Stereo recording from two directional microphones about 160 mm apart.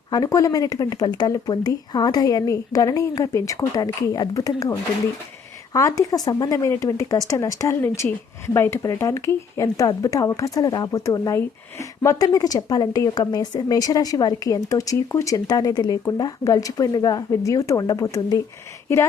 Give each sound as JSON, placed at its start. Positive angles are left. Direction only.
{"t": 0.1, "sound": "speech", "side_deg": 20}
{"t": 5.7, "sound": "speech", "side_deg": 20}